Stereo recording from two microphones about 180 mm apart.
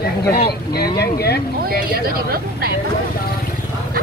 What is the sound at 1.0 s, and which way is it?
Speech, 60° left (ahead or behind).